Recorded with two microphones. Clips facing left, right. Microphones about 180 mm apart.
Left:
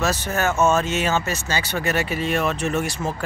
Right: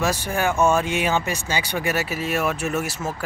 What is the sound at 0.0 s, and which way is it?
Speech, 10° right (ahead or behind).